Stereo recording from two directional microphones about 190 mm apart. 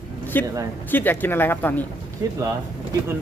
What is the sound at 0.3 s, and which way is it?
Speech, 10° left (ahead or behind).